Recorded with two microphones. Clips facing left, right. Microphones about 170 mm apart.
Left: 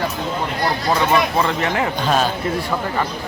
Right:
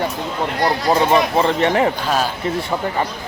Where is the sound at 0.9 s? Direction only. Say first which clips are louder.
Right 2 dB; 30° right (ahead or behind).